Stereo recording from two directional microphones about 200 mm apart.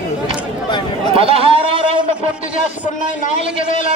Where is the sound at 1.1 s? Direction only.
30° right (ahead or behind).